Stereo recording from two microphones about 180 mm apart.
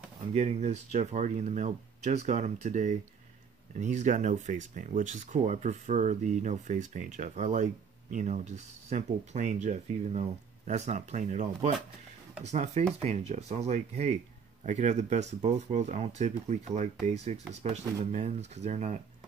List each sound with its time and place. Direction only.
0.3 s speech: 40° right (ahead or behind)